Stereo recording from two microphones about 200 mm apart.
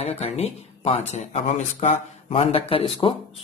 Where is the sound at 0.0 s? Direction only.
30° left (ahead or behind).